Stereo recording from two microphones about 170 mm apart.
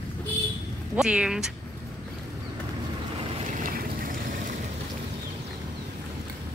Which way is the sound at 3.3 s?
50° right (ahead or behind).